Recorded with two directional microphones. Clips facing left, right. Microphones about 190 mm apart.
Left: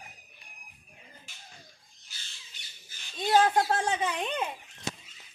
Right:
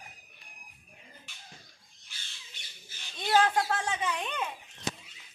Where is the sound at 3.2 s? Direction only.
35° left (ahead or behind).